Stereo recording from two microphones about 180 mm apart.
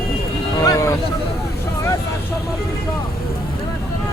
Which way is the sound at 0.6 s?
20° left (ahead or behind).